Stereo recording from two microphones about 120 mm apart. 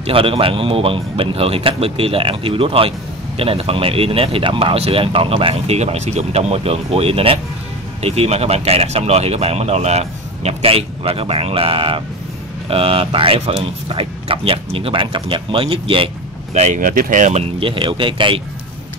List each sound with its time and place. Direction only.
0.0 s speech: 50° right (ahead or behind)
16.5 s speech: 80° right; by 18.4 s 45° right (ahead or behind)